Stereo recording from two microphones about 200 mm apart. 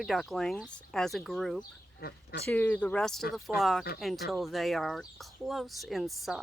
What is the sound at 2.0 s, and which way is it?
Speech, 55° left (ahead or behind).